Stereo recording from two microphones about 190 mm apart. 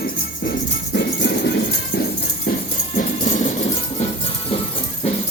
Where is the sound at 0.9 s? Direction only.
65° left (ahead or behind).